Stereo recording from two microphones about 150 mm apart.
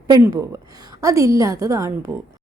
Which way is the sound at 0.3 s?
25° right (ahead or behind).